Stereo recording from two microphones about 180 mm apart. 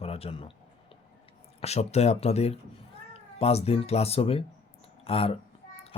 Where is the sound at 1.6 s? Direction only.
35° left (ahead or behind).